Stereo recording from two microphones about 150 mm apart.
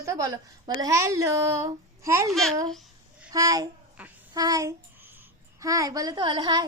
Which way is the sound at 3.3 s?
25° right (ahead or behind).